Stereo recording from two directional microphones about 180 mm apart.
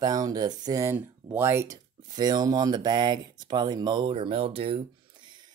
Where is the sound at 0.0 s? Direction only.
20° right (ahead or behind).